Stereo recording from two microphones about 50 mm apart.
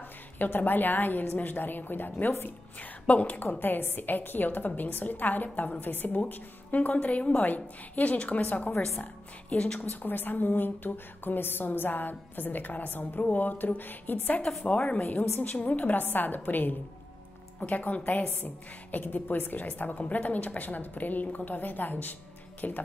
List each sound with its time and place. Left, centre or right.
0.4 s a woman's voice: left
3.1 s a woman's voice: left
9.8 s a woman's voice: left
14.6 s speech: left
15.0 s a woman's voice: left